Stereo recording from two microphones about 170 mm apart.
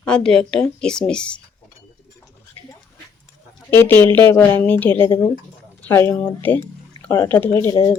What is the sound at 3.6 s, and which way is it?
Speech, 10° left (ahead or behind).